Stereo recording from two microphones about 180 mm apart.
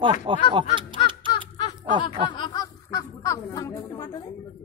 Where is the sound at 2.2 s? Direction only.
25° left (ahead or behind).